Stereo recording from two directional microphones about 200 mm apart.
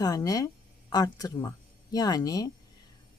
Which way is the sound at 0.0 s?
15° left (ahead or behind).